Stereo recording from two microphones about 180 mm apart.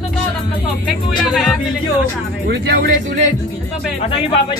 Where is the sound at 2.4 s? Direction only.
65° right (ahead or behind).